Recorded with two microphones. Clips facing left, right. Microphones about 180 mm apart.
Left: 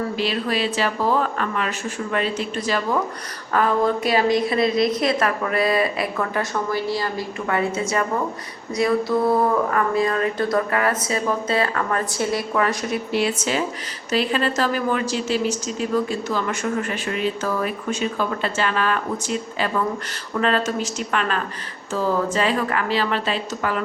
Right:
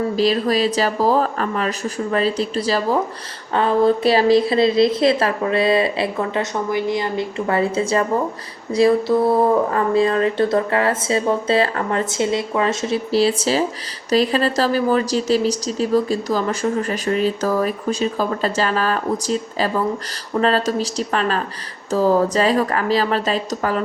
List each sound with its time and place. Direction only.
0.2 s a woman's voice: 40° right (ahead or behind)